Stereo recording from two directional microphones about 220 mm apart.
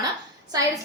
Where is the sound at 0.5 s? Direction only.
15° right (ahead or behind).